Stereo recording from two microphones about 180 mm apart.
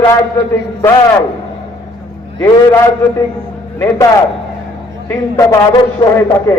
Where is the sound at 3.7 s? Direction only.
15° left (ahead or behind).